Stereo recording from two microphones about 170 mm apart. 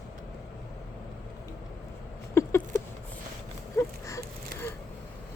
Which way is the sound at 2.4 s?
15° left (ahead or behind).